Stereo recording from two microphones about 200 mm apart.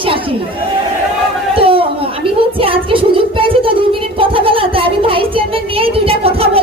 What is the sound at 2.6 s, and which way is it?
A woman's voice, 25° right (ahead or behind).